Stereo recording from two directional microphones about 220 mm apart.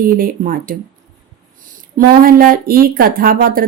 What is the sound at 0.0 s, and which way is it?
Speech, 40° right (ahead or behind).